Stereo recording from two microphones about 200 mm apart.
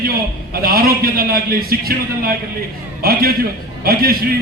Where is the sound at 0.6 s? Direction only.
50° right (ahead or behind).